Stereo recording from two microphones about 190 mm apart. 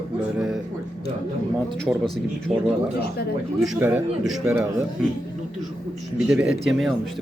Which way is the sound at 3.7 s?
10° right (ahead or behind).